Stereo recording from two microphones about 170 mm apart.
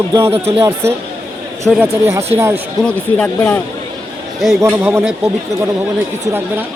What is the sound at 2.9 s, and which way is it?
Speech, 5° left (ahead or behind).